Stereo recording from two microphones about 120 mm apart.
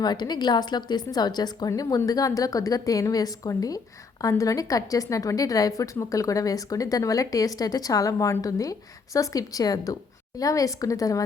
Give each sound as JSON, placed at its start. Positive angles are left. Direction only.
{"t": 0.0, "sound": "a woman's voice", "side_deg": 35}